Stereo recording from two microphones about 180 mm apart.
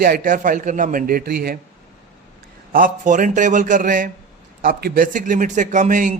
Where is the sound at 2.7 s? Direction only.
45° right (ahead or behind).